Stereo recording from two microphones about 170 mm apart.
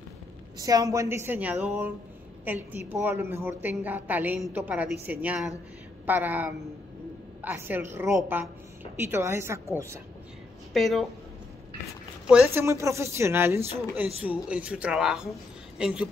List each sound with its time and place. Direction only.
0.6 s speech: 20° right (ahead or behind)
10.7 s a woman's voice: centre (ahead or behind)
12.4 s speech: 15° right (ahead or behind)